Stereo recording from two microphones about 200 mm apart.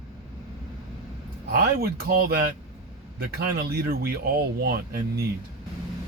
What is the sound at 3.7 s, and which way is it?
Speech, 50° right (ahead or behind).